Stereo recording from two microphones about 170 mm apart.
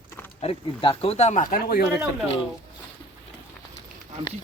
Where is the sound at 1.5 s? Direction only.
60° left (ahead or behind).